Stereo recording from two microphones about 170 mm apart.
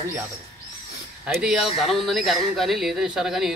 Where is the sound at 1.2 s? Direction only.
Centre (ahead or behind).